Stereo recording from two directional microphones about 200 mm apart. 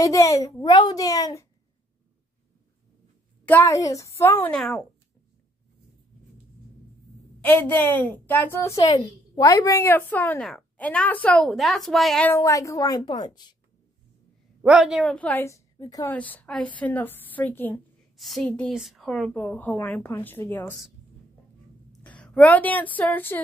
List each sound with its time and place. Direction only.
0.0 s a woman's voice: 15° left (ahead or behind)
3.4 s a woman's voice: 10° left (ahead or behind)
7.4 s a woman's voice: 10° left (ahead or behind)
14.6 s a woman's voice: 5° right (ahead or behind); by 16.2 s 20° left (ahead or behind)
16.2 s a woman's voice: 10° left (ahead or behind)
22.0 s a woman's voice: 5° left (ahead or behind)